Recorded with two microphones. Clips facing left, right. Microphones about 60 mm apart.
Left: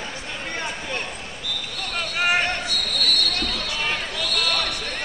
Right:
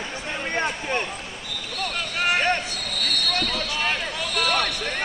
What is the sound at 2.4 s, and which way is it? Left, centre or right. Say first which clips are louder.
Basketball bounce: right 2 dB; right.